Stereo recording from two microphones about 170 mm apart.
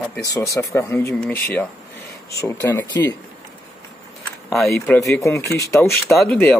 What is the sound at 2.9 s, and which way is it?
Speech, 25° left (ahead or behind).